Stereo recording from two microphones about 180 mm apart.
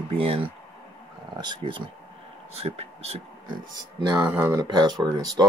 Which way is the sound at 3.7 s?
20° right (ahead or behind).